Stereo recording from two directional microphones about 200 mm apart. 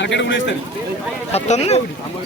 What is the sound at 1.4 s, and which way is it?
Speech, 35° left (ahead or behind).